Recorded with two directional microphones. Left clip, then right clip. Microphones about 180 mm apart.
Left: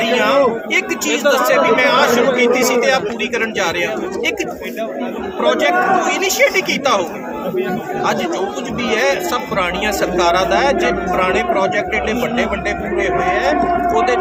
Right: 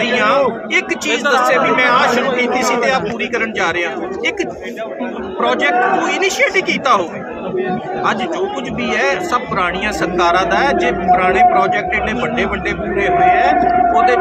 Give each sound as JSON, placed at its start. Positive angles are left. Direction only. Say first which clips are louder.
{"t": 0.0, "sound": "a man's voice", "louder": "even", "side_deg": 5}
{"t": 1.1, "sound": "speech", "louder": "even", "side_deg": -45}
{"t": 1.7, "sound": "a man's voice", "louder": "even", "side_deg": 5}
{"t": 5.4, "sound": "a man's voice", "louder": "even", "side_deg": 5}
{"t": 8.9, "sound": "a man's voice", "louder": "right 1 dB", "side_deg": 5}